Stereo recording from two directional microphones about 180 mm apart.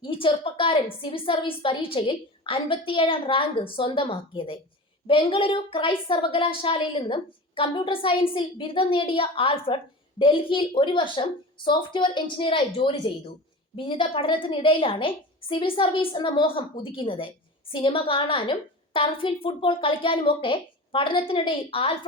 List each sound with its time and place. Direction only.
0.0 s a woman's voice: 30° left (ahead or behind)